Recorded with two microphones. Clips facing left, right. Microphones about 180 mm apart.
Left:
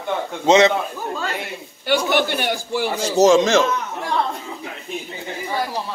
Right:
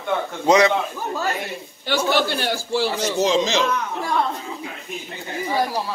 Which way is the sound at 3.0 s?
45° left (ahead or behind).